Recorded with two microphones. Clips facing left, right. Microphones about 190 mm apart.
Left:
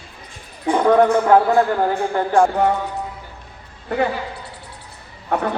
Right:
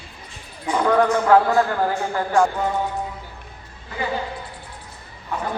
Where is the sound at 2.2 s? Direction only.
30° left (ahead or behind).